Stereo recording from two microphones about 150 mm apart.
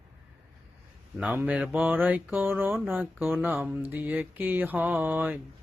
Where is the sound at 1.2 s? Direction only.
10° right (ahead or behind).